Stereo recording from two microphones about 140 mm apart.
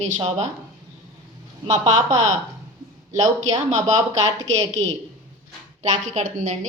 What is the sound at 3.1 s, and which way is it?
Speech, 25° right (ahead or behind).